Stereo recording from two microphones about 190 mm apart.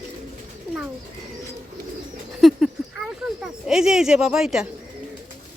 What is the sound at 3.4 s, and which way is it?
A woman's voice, 5° right (ahead or behind).